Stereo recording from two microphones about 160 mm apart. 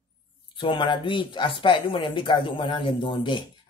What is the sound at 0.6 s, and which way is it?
Speech, 30° left (ahead or behind).